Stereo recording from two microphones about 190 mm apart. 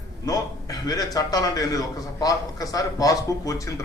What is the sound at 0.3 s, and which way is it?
A man's voice, 20° left (ahead or behind).